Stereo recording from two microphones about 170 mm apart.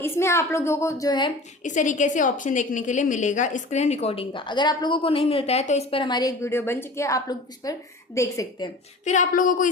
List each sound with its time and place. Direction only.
0.0 s a woman's voice: 15° left (ahead or behind)
1.6 s a woman's voice: 45° left (ahead or behind); by 8.7 s 20° left (ahead or behind)
9.0 s speech: 50° left (ahead or behind)